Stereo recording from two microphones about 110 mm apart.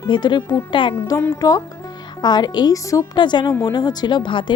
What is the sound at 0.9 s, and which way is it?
A woman's voice, 25° left (ahead or behind).